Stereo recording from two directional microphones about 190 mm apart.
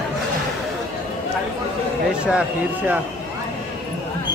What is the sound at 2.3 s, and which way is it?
Speech, 5° right (ahead or behind).